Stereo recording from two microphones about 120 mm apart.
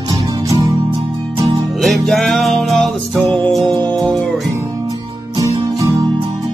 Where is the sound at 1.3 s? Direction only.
40° right (ahead or behind).